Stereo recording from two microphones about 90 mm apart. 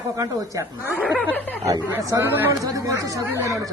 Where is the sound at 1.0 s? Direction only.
20° right (ahead or behind).